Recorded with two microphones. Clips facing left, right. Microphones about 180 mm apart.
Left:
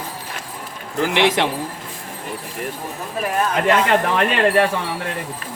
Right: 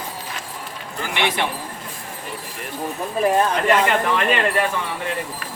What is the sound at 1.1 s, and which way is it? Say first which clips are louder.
Speech: left 5 dB; 90° left.